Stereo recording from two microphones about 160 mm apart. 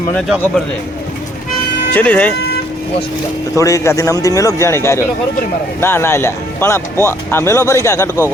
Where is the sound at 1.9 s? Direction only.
10° left (ahead or behind).